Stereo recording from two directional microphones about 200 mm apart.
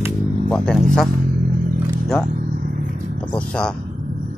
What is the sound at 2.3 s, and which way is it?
Vehicle, 45° right (ahead or behind).